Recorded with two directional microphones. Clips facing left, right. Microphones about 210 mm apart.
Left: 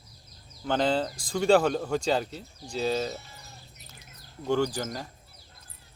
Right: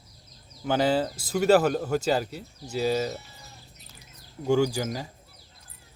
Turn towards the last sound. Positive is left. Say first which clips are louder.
# right 3 dB
turn(degrees=-10)  # may be behind; listen again after turning